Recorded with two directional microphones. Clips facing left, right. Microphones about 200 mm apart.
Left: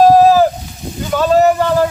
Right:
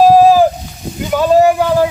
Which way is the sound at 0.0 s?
10° right (ahead or behind).